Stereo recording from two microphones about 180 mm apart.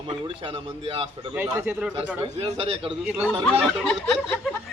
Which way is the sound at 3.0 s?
5° right (ahead or behind).